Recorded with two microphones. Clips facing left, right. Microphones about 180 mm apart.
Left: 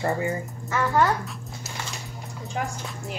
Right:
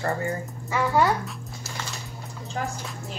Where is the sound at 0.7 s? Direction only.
10° right (ahead or behind).